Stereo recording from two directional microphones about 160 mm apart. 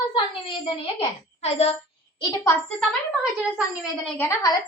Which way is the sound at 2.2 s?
25° left (ahead or behind).